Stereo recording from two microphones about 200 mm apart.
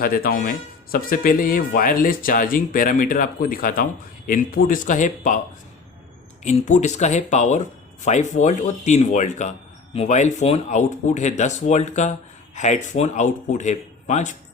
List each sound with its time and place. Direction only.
0.0 s speech: 45° left (ahead or behind)
6.4 s speech: 35° left (ahead or behind)